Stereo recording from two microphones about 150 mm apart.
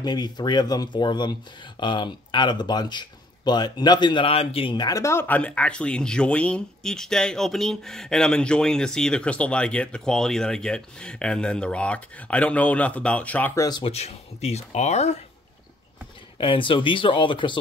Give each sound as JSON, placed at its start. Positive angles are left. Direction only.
{"t": 0.0, "sound": "speech", "side_deg": 30}
{"t": 13.6, "sound": "speech", "side_deg": 25}
{"t": 13.8, "sound": "speech", "side_deg": 45}
{"t": 16.3, "sound": "speech", "side_deg": 35}